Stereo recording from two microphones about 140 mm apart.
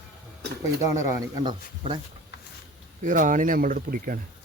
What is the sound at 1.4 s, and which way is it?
Speech, 35° right (ahead or behind).